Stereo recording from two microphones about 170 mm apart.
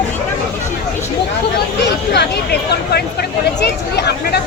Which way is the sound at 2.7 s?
70° left (ahead or behind).